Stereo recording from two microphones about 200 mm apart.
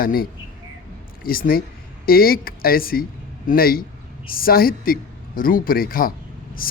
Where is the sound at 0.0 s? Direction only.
50° left (ahead or behind).